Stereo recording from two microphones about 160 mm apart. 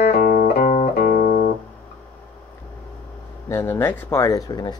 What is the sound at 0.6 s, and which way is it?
Music, 50° left (ahead or behind).